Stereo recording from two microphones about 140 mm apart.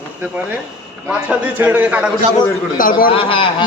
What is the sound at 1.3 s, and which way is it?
Speech, 10° right (ahead or behind).